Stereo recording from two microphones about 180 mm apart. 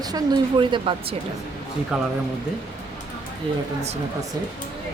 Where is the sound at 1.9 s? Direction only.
5° right (ahead or behind).